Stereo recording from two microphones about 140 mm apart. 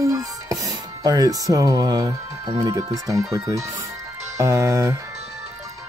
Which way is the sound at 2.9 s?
25° right (ahead or behind).